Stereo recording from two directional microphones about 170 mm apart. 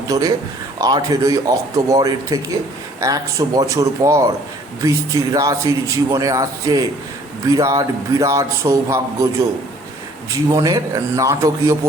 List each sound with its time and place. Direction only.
0.1 s a man's voice: 20° right (ahead or behind)
10.3 s a man's voice: 20° right (ahead or behind)